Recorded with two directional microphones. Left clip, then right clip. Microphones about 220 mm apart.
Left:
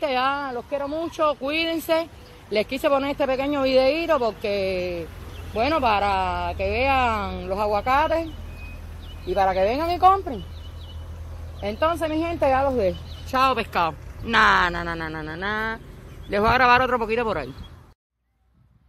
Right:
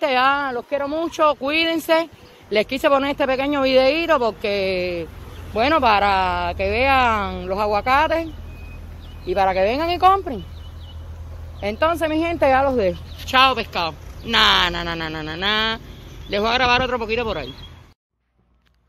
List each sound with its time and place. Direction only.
0.0 s a sound: 15° right (ahead or behind)
0.3 s speech: 55° right (ahead or behind)
0.8 s speech: 30° right (ahead or behind)
6.2 s speech: 55° right (ahead or behind)
6.5 s speech: 15° right (ahead or behind)
9.3 s speech: 10° right (ahead or behind)
11.6 s speech: 15° right (ahead or behind)
12.2 s a woman's voice: 55° right (ahead or behind)
13.3 s speech: 5° left (ahead or behind)
16.3 s speech: 10° left (ahead or behind)